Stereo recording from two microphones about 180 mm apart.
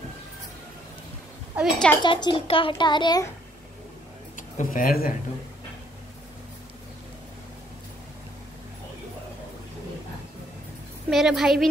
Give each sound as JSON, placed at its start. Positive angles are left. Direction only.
{"t": 1.6, "sound": "a woman's voice", "side_deg": 5}
{"t": 2.0, "sound": "a child's voice", "side_deg": 25}
{"t": 4.4, "sound": "speech", "side_deg": 45}
{"t": 11.1, "sound": "a woman's voice", "side_deg": 0}